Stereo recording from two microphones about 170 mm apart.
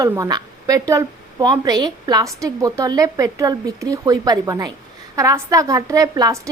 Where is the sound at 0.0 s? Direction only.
20° right (ahead or behind).